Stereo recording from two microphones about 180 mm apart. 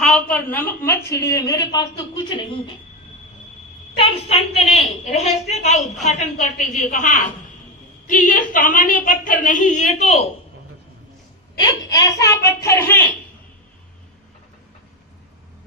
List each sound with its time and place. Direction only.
0.0 s a woman's voice: 5° left (ahead or behind); by 2.4 s 25° left (ahead or behind)
3.9 s a woman's voice: 30° left (ahead or behind)
11.6 s a woman's voice: 20° left (ahead or behind)